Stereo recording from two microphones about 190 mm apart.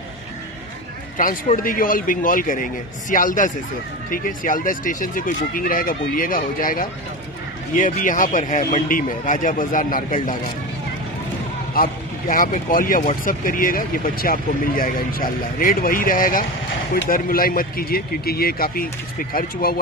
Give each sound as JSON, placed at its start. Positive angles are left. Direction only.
{"t": 1.1, "sound": "speech", "side_deg": 45}
{"t": 11.7, "sound": "speech", "side_deg": 50}